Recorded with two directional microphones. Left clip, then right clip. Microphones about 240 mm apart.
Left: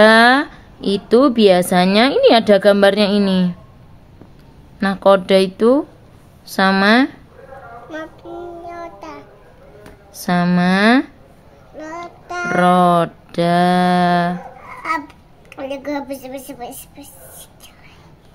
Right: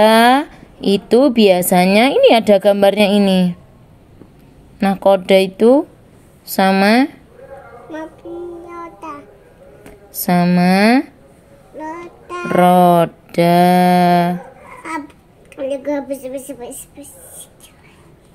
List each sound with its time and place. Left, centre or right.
0.0 s a woman's voice: centre
4.7 s a woman's voice: centre
8.6 s child singing: left
10.2 s a woman's voice: centre
11.9 s child singing: left
12.4 s a woman's voice: centre
14.8 s a sound: left